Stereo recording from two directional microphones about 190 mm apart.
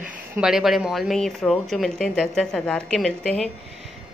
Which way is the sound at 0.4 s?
Centre (ahead or behind).